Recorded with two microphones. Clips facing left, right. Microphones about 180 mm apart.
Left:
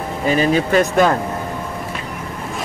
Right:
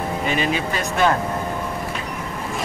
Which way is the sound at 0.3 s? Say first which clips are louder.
Left 8 dB; 40° left (ahead or behind).